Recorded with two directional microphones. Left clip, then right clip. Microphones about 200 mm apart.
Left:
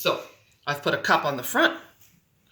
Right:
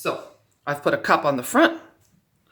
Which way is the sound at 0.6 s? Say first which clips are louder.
Right 3 dB; 45° right (ahead or behind).